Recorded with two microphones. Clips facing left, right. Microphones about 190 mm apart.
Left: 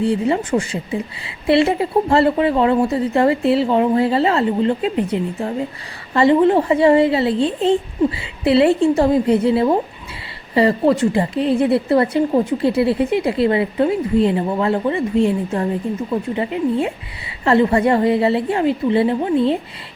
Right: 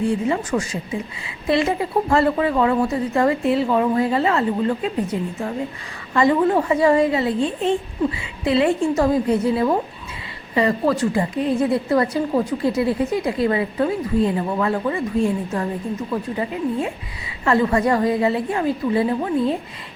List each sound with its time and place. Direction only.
0.0 s speech: 30° left (ahead or behind)